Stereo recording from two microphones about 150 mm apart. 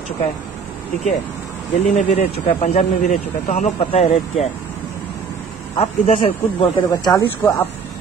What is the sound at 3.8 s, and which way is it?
Speech, 40° left (ahead or behind).